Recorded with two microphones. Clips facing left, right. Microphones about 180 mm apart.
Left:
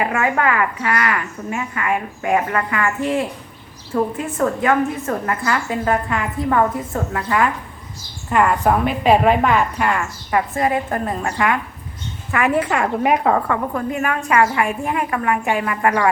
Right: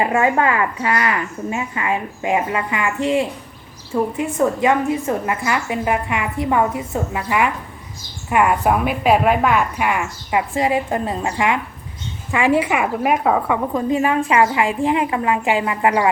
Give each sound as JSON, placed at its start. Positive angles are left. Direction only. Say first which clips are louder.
{"t": 0.0, "sound": "a woman's voice", "louder": "right 2 dB", "side_deg": -25}
{"t": 13.9, "sound": "speech", "louder": "right 3 dB", "side_deg": -20}